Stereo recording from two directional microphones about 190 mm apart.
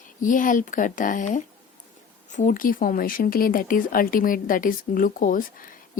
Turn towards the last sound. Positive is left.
turn(degrees=45)  # may be behind; listen again after turning